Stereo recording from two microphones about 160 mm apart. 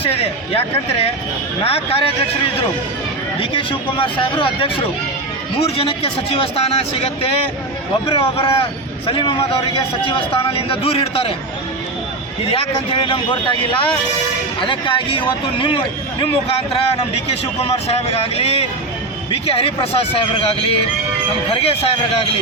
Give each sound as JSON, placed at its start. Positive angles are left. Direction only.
{"t": 0.0, "sound": "a man's voice", "side_deg": 40}
{"t": 3.4, "sound": "a man's voice", "side_deg": 35}
{"t": 8.1, "sound": "a man's voice", "side_deg": 35}
{"t": 12.5, "sound": "a man's voice", "side_deg": 35}